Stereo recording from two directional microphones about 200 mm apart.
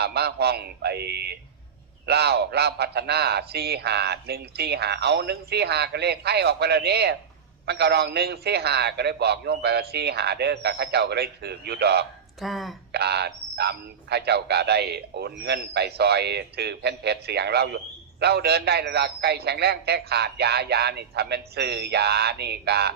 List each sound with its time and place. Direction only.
0.0 s a man's voice: 55° right (ahead or behind)
12.4 s speech: centre (ahead or behind)
12.9 s a man's voice: 55° right (ahead or behind)